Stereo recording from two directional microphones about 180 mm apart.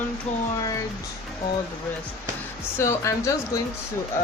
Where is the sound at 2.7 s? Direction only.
15° left (ahead or behind).